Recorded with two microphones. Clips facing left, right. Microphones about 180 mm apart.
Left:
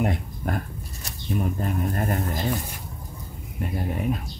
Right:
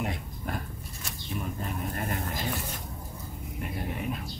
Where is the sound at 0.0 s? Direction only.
50° left (ahead or behind).